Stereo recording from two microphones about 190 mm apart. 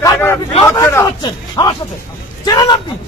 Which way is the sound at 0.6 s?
15° left (ahead or behind).